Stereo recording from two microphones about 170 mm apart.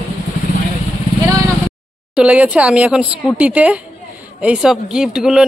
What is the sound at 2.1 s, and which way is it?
Speech, 5° right (ahead or behind).